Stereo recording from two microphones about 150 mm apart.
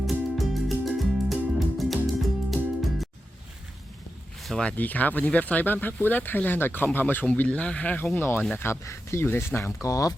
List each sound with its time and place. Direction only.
0.0 s music: centre (ahead or behind)
4.4 s speech: centre (ahead or behind); by 10.2 s 25° left (ahead or behind)